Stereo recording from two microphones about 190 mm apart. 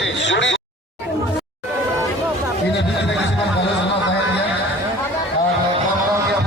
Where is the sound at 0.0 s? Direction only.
75° left (ahead or behind).